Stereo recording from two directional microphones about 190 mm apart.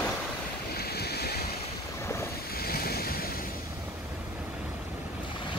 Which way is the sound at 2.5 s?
55° left (ahead or behind).